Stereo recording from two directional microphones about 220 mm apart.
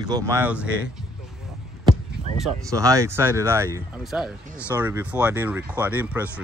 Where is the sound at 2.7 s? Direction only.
15° right (ahead or behind).